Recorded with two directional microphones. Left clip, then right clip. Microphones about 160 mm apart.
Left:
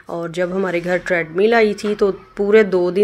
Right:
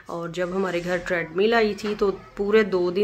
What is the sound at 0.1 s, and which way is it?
Speech, 25° left (ahead or behind).